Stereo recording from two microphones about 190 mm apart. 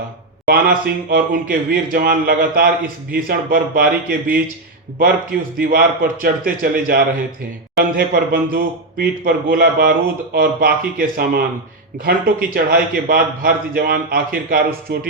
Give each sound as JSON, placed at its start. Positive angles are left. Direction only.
{"t": 0.5, "sound": "a man's voice", "side_deg": -50}